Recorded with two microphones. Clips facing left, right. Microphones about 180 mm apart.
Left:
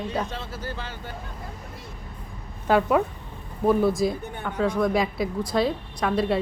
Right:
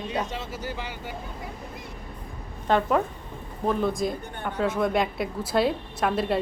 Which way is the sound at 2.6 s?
5° left (ahead or behind).